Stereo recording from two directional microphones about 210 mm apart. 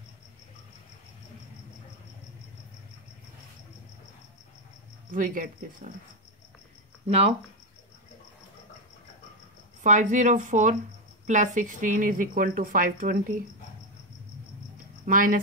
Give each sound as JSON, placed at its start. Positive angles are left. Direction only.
{"t": 5.1, "sound": "speech", "side_deg": -40}
{"t": 7.1, "sound": "speech", "side_deg": -30}
{"t": 9.8, "sound": "speech", "side_deg": -35}
{"t": 15.0, "sound": "speech", "side_deg": -40}